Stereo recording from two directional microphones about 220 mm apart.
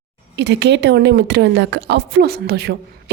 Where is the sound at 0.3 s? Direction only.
50° right (ahead or behind).